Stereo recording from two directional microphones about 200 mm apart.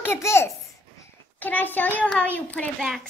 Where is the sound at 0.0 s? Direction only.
15° left (ahead or behind).